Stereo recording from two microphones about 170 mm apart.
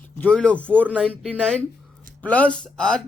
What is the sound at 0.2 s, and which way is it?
Speech, 5° left (ahead or behind).